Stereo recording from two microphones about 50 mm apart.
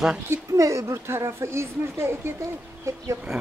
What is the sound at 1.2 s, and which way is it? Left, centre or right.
Speech, right.